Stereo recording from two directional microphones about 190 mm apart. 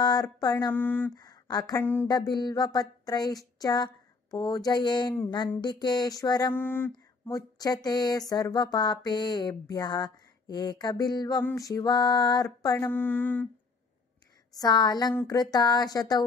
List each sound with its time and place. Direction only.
0.0 s speech: 20° left (ahead or behind)
1.2 s speech: 20° left (ahead or behind)
6.6 s a sound: 10° left (ahead or behind)
6.9 s speech: 20° left (ahead or behind)
11.4 s a sound: 15° left (ahead or behind)
14.5 s speech: 20° left (ahead or behind)